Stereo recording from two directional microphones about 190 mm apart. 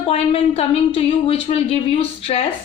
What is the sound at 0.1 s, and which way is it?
Speech, 30° left (ahead or behind).